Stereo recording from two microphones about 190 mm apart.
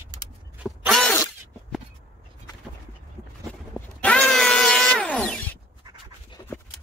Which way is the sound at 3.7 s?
5° left (ahead or behind).